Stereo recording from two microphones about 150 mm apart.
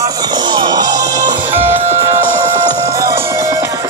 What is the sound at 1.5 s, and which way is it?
Speech, 15° right (ahead or behind).